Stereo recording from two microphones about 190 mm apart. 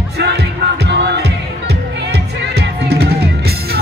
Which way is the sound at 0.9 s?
65° right (ahead or behind).